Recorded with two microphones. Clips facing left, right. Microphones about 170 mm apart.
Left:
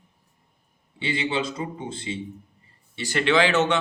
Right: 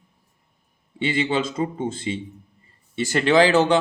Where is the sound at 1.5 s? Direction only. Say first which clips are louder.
Right 7 dB; 45° right (ahead or behind).